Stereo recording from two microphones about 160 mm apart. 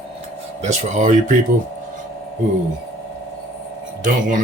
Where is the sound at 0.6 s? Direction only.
45° right (ahead or behind).